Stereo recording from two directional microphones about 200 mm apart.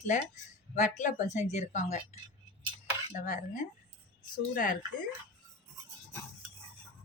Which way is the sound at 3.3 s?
35° left (ahead or behind).